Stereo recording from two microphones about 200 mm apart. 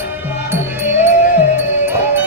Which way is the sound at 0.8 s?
35° left (ahead or behind).